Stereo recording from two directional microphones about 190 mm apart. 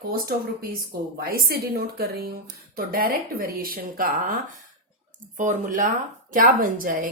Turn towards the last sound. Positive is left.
turn(degrees=-45)  # may be behind; listen again after turning